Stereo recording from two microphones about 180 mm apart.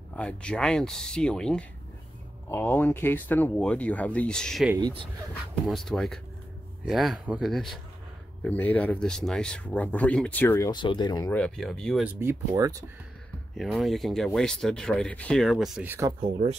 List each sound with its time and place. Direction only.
0.1 s speech: 5° left (ahead or behind)
5.7 s speech: centre (ahead or behind)
10.7 s speech: 25° left (ahead or behind)
11.3 s speech: 5° left (ahead or behind)
12.2 s speech: 15° right (ahead or behind)
13.6 s speech: centre (ahead or behind)
16.2 s speech: 35° right (ahead or behind)